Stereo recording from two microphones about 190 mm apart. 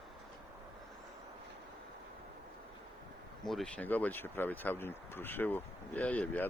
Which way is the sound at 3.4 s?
Centre (ahead or behind).